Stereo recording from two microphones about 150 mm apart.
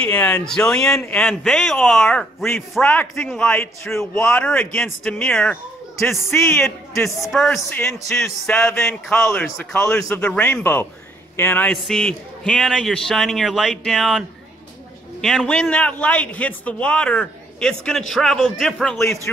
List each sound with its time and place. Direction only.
0.0 s a man's voice: 10° left (ahead or behind)
7.2 s a man's voice: centre (ahead or behind)